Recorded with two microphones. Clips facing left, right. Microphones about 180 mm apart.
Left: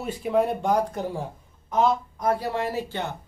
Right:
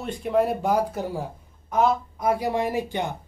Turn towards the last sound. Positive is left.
turn(degrees=-15)  # may be behind; listen again after turning